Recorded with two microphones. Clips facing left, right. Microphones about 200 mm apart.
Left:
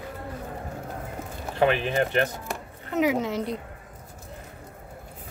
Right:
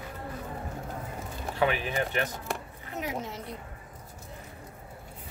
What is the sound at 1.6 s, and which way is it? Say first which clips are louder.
Speech: left 5 dB; 55° left (ahead or behind).